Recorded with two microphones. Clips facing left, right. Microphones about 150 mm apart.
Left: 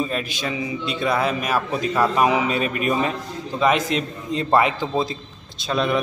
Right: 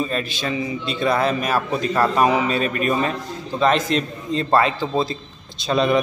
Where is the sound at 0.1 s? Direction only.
15° left (ahead or behind).